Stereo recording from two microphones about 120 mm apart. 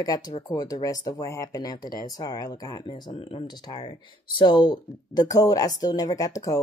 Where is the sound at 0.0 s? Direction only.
30° left (ahead or behind).